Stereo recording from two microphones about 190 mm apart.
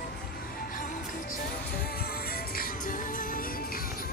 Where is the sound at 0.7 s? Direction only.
45° left (ahead or behind).